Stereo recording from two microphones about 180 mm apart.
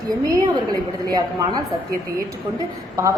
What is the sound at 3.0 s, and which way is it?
Speech, 20° right (ahead or behind).